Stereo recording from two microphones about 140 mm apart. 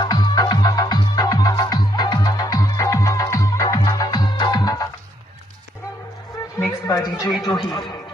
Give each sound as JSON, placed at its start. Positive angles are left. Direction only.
{"t": 0.0, "sound": "music", "side_deg": 30}
{"t": 6.6, "sound": "a man's voice", "side_deg": 25}